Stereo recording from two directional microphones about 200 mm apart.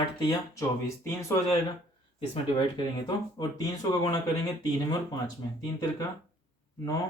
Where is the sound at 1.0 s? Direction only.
15° left (ahead or behind).